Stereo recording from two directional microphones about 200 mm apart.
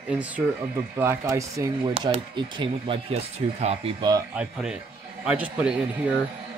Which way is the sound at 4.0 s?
20° right (ahead or behind).